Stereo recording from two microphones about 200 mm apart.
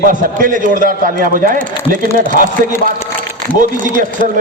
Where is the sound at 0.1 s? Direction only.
40° right (ahead or behind).